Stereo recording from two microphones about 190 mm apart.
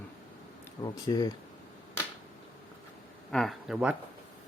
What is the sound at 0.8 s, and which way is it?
Speech, 20° left (ahead or behind).